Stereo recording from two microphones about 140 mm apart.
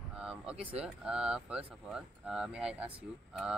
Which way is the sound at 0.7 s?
5° right (ahead or behind).